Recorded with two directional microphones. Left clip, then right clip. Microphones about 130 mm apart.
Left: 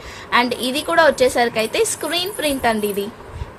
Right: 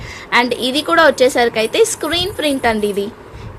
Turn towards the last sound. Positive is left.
turn(degrees=-35)  # may be behind; listen again after turning